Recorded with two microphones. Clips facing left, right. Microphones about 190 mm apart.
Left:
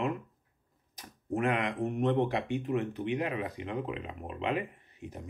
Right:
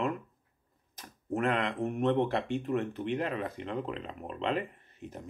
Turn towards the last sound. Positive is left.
turn(degrees=15)  # may be behind; listen again after turning